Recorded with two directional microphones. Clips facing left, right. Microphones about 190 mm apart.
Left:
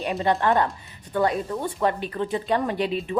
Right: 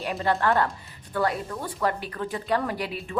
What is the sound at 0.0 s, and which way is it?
A woman's voice, 20° left (ahead or behind).